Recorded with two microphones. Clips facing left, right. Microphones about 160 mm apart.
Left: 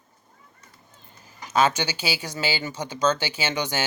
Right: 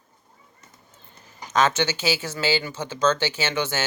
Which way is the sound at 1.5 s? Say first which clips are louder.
Right 1 dB; 10° left (ahead or behind).